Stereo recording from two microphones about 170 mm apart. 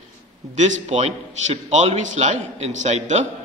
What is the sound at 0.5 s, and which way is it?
A man's voice, 45° right (ahead or behind).